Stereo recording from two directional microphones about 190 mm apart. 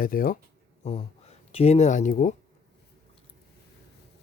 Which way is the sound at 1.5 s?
30° left (ahead or behind).